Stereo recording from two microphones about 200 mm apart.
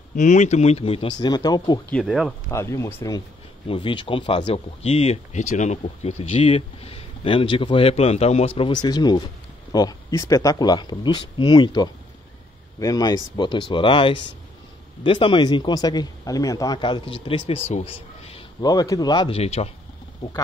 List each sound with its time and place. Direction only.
0.1 s speech: 40° left (ahead or behind); by 1.8 s 20° left (ahead or behind)
2.0 s speech: centre (ahead or behind)
2.5 s speech: 15° left (ahead or behind)
3.6 s speech: 25° left (ahead or behind)